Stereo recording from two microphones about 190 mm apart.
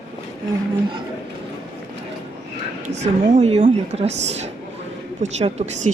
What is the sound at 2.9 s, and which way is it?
A woman's voice, 35° right (ahead or behind).